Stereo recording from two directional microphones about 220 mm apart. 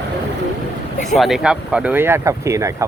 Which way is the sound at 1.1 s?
Centre (ahead or behind).